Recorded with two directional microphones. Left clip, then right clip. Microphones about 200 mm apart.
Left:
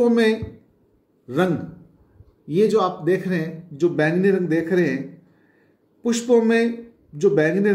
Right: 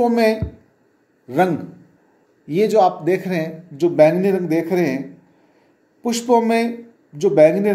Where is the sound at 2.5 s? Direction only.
5° left (ahead or behind).